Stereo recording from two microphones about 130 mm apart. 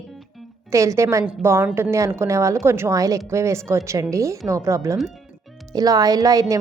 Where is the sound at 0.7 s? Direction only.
25° right (ahead or behind).